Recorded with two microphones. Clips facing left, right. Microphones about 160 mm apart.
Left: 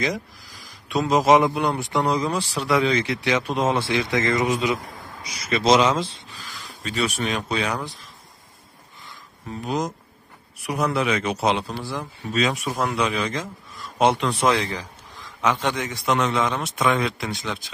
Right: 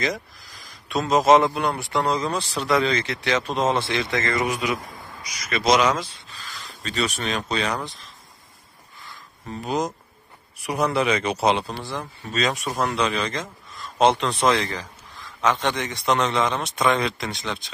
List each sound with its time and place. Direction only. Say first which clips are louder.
1.1 s speech: right 1 dB; 10° left (ahead or behind)
6.2 s speech: even; 10° left (ahead or behind)
9.6 s speech: right 1 dB; centre (ahead or behind)